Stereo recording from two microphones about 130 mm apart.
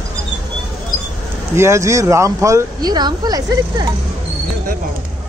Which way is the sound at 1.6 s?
20° right (ahead or behind).